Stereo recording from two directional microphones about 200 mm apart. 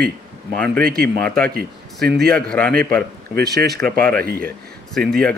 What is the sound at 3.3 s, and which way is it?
Speech, 55° right (ahead or behind).